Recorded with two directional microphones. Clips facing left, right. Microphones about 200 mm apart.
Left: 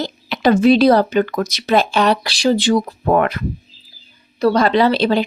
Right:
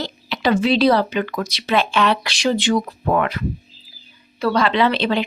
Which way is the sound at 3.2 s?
50° left (ahead or behind).